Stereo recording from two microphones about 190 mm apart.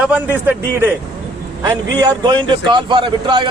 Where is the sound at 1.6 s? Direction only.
20° right (ahead or behind).